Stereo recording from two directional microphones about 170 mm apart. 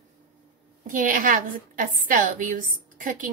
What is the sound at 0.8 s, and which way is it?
A woman's voice, 50° right (ahead or behind).